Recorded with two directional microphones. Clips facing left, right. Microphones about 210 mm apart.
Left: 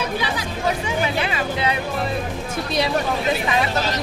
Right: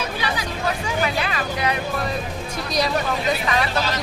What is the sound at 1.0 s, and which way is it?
Music, 25° left (ahead or behind).